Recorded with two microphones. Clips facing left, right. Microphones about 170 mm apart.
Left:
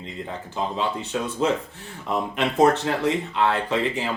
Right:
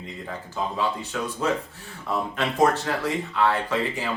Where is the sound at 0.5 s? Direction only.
20° left (ahead or behind).